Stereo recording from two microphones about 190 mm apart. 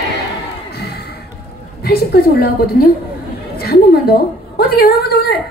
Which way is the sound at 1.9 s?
50° left (ahead or behind).